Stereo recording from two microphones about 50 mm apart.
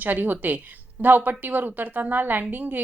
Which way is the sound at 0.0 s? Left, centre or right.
Right.